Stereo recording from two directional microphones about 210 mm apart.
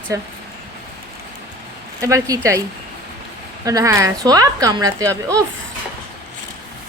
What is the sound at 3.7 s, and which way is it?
A woman's voice, 15° right (ahead or behind).